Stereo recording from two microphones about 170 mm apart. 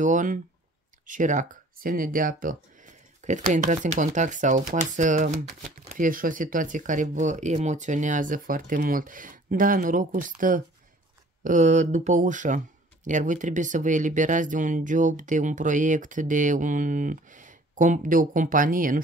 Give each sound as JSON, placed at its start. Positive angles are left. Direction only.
{"t": 0.0, "sound": "speech", "side_deg": -50}